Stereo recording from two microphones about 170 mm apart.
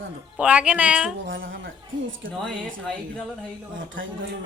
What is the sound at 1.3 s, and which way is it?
Speech, 75° right (ahead or behind).